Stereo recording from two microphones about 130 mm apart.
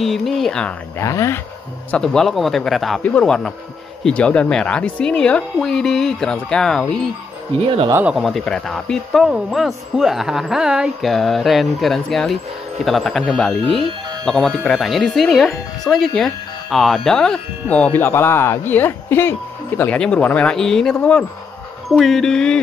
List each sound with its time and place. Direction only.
0.0 s speech: centre (ahead or behind)
0.9 s speech: 25° left (ahead or behind)
1.9 s speech: 5° left (ahead or behind)
8.1 s speech: centre (ahead or behind)
15.9 s speech: 10° left (ahead or behind)